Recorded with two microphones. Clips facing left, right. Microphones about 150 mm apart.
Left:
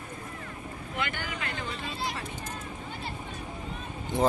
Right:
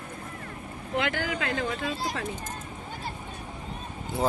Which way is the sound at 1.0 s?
90° right.